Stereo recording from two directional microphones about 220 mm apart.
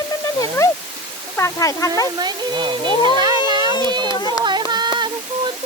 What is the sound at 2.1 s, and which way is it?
Speech, 20° right (ahead or behind).